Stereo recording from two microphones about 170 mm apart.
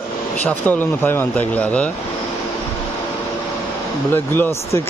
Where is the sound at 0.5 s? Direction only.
10° left (ahead or behind).